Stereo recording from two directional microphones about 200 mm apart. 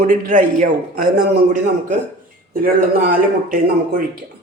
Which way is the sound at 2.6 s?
45° right (ahead or behind).